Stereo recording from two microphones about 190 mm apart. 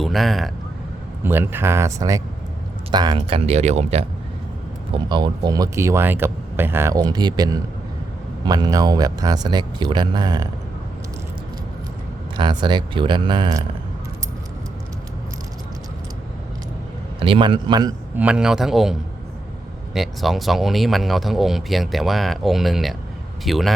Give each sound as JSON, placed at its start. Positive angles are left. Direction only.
{"t": 0.0, "sound": "speech", "side_deg": 0}
{"t": 1.2, "sound": "speech", "side_deg": -10}
{"t": 12.4, "sound": "speech", "side_deg": -25}
{"t": 17.2, "sound": "speech", "side_deg": -25}
{"t": 18.2, "sound": "speech", "side_deg": -5}